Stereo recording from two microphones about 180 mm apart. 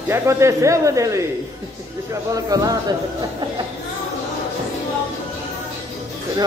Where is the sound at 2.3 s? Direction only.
20° right (ahead or behind).